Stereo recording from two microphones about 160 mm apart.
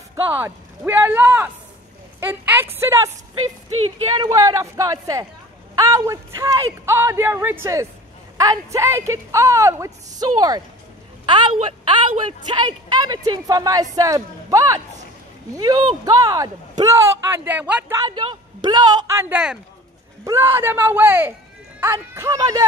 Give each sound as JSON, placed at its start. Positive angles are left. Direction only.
{"t": 0.1, "sound": "speech", "side_deg": -15}
{"t": 4.2, "sound": "a woman's voice", "side_deg": -20}
{"t": 17.9, "sound": "speech", "side_deg": -25}
{"t": 19.0, "sound": "speech", "side_deg": -15}